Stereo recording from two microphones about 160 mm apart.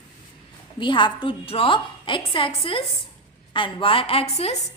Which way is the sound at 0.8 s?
30° left (ahead or behind).